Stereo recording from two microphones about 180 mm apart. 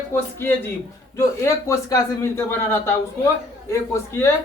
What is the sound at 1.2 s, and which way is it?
A man's voice, 15° left (ahead or behind).